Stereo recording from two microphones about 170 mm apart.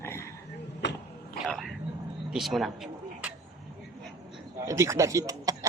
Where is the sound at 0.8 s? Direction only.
90° left.